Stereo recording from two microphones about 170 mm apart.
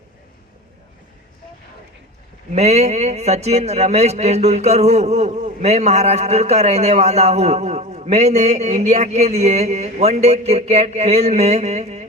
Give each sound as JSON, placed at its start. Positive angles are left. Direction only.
{"t": 2.6, "sound": "a man's voice", "side_deg": -40}